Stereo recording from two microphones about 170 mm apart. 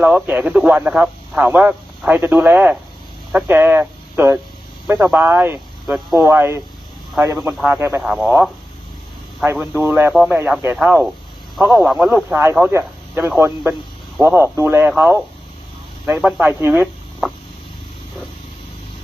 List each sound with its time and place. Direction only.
0.0 s speech: 10° right (ahead or behind)
5.8 s speech: centre (ahead or behind)
6.2 s speech: 15° right (ahead or behind)
8.0 s speech: 5° right (ahead or behind)
11.5 s speech: centre (ahead or behind)